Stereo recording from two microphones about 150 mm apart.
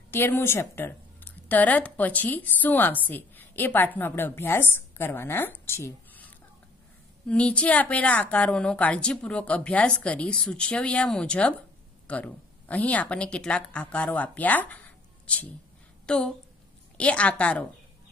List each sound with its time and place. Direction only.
0.1 s speech: 15° left (ahead or behind)
7.2 s a woman's voice: 5° left (ahead or behind)